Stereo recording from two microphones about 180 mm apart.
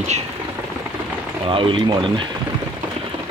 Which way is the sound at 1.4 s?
30° right (ahead or behind).